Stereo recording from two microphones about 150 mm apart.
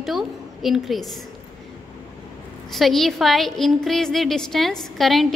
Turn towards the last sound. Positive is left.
turn(degrees=0)  # may be behind; listen again after turning